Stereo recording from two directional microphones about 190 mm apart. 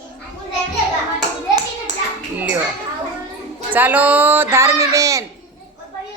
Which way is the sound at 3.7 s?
10° right (ahead or behind).